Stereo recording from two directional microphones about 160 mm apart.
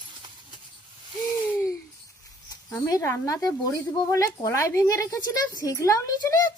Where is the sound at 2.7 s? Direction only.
15° left (ahead or behind).